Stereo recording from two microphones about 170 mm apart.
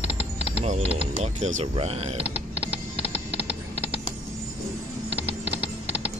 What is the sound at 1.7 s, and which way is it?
Speech, 35° right (ahead or behind).